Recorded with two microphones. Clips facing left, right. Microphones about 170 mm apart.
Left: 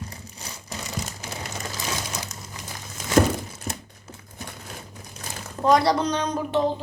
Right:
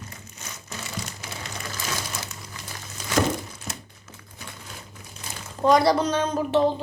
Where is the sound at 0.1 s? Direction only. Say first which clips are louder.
Left 2 dB; 35° left (ahead or behind).